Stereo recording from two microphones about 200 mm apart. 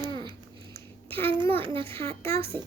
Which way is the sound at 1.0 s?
25° right (ahead or behind).